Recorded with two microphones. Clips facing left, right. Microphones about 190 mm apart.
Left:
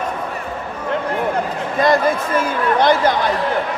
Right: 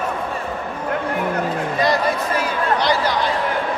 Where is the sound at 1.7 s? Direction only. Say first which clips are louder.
Left 5 dB; 50° left (ahead or behind).